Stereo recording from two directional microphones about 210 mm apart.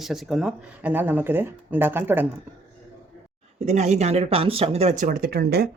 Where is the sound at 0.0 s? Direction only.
Centre (ahead or behind).